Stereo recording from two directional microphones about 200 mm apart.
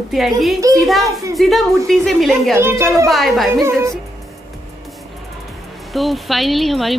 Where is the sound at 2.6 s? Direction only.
10° right (ahead or behind).